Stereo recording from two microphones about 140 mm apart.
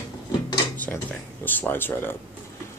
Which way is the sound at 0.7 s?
10° left (ahead or behind).